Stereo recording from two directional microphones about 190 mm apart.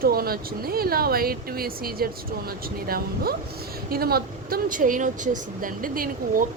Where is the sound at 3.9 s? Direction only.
55° right (ahead or behind).